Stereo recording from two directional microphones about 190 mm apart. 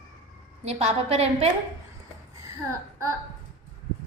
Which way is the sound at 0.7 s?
35° right (ahead or behind).